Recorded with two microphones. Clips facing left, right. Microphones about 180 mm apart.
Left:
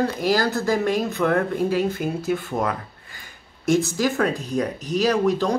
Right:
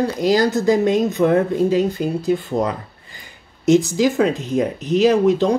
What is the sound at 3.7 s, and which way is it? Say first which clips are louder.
Speech: right 6 dB; 20° right (ahead or behind).